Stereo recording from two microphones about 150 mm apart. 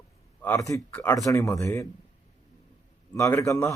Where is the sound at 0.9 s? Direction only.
10° left (ahead or behind).